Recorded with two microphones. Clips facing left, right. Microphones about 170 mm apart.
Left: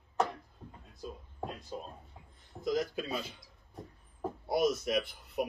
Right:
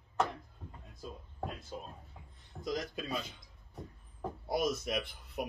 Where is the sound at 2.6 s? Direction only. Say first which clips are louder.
Left 5 dB; centre (ahead or behind).